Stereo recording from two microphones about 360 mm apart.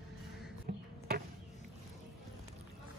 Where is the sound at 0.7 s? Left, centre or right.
Right.